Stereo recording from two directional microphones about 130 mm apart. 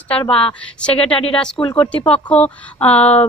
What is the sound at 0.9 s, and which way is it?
Speech, 45° left (ahead or behind).